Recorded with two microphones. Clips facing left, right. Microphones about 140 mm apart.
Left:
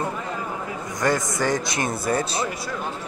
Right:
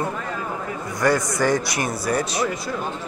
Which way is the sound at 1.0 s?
20° left (ahead or behind).